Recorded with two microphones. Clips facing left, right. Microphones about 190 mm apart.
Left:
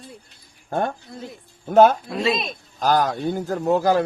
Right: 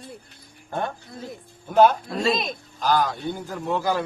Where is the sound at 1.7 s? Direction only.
50° left (ahead or behind).